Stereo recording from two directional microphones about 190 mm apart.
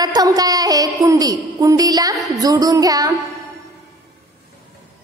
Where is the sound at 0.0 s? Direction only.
20° right (ahead or behind).